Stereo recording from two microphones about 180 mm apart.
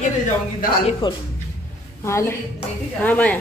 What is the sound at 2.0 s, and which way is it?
Speech, 15° left (ahead or behind).